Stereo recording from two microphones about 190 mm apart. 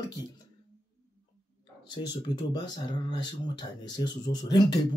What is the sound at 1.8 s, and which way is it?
Speech, 25° left (ahead or behind).